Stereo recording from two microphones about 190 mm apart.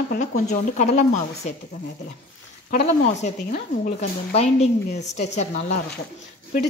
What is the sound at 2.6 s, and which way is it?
Speech, 35° left (ahead or behind).